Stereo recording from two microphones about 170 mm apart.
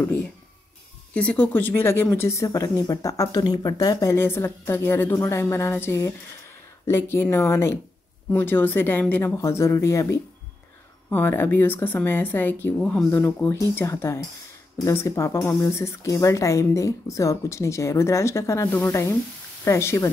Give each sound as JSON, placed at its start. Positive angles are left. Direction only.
{"t": 1.1, "sound": "speech", "side_deg": 10}